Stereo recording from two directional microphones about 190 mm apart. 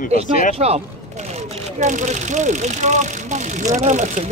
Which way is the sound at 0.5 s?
30° right (ahead or behind).